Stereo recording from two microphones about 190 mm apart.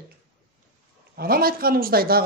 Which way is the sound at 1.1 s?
50° right (ahead or behind).